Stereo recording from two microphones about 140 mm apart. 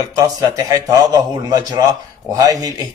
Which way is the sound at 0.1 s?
25° right (ahead or behind).